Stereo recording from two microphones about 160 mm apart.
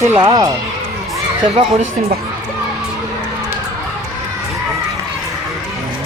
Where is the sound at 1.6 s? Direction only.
30° right (ahead or behind).